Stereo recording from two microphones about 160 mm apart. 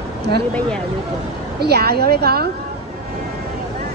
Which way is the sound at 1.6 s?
80° right.